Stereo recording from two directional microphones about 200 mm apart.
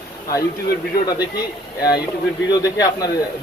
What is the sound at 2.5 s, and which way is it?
Speech, 15° left (ahead or behind).